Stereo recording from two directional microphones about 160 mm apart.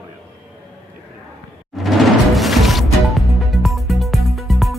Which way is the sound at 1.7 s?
Centre (ahead or behind).